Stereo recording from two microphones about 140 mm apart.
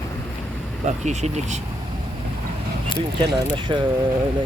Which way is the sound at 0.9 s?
55° right (ahead or behind).